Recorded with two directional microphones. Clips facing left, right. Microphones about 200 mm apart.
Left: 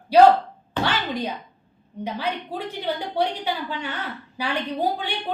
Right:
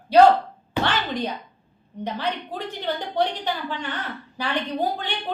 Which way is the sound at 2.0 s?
10° left (ahead or behind).